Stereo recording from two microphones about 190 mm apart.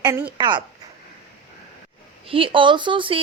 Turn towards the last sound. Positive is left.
turn(degrees=-25)  # may be behind; listen again after turning